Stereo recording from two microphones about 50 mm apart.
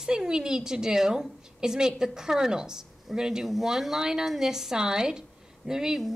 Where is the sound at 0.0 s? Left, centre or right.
Centre.